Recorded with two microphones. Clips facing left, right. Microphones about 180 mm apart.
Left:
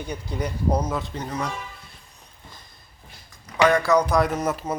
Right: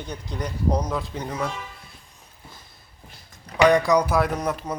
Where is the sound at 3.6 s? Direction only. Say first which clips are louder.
Right 1 dB; 15° right (ahead or behind).